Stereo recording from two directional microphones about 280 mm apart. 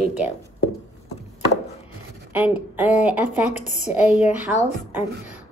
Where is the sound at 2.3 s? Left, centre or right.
Centre.